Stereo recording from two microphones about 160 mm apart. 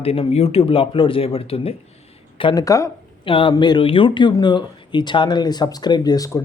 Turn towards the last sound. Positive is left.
turn(degrees=20)  # may be behind; listen again after turning